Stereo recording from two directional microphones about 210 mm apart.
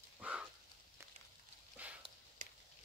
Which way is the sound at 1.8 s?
5° right (ahead or behind).